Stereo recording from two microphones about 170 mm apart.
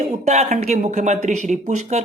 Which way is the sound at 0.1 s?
40° right (ahead or behind).